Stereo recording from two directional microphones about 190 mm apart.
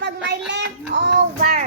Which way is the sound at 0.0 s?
65° right (ahead or behind).